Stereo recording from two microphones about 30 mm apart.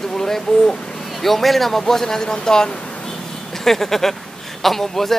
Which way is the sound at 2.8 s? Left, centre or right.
Left.